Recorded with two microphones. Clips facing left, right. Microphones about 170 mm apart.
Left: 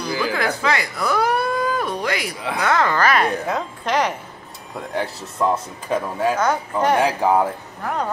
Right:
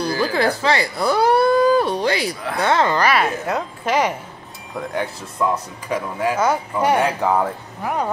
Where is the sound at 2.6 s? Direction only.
25° right (ahead or behind).